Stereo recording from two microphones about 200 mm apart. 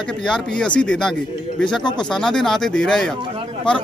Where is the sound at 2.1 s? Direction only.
5° left (ahead or behind).